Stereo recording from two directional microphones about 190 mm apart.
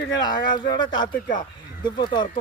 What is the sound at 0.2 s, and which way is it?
Speech, 25° left (ahead or behind).